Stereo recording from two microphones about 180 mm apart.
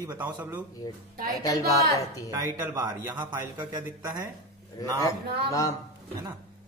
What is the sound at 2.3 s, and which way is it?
A man's voice, 15° right (ahead or behind).